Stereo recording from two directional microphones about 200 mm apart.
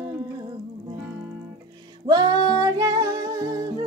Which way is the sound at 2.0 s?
20° right (ahead or behind).